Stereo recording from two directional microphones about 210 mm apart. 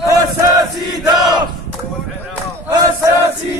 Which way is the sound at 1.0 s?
20° right (ahead or behind).